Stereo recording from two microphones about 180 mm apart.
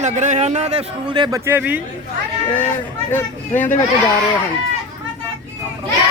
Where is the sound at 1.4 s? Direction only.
10° right (ahead or behind).